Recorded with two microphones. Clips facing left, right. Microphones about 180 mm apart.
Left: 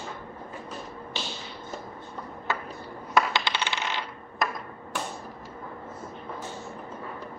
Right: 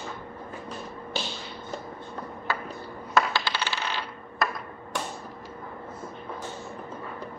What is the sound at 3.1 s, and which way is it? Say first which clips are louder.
Coin: even; 20° left (ahead or behind).